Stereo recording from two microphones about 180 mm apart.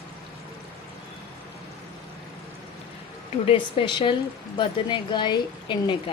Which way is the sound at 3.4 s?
30° left (ahead or behind).